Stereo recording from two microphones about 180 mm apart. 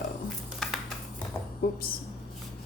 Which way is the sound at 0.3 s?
Centre (ahead or behind).